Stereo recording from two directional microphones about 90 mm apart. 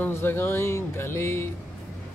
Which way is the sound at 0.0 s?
25° left (ahead or behind).